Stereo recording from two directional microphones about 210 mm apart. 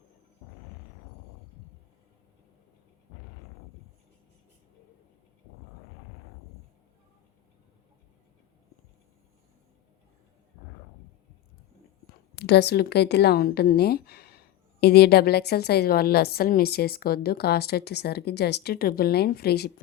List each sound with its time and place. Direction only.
12.4 s a woman's voice: 55° left (ahead or behind)